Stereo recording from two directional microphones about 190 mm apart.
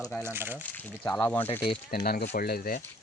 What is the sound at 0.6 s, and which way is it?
Speech, 10° left (ahead or behind).